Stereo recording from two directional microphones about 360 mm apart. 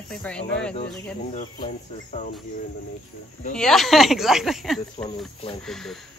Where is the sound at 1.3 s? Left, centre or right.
Left.